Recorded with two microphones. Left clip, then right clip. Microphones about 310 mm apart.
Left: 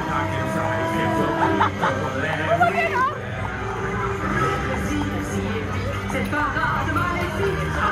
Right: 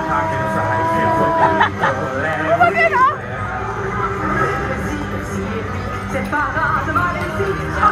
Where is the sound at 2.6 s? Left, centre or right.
Centre.